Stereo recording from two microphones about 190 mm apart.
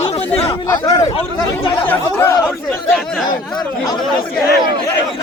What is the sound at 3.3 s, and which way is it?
Speech, 25° left (ahead or behind).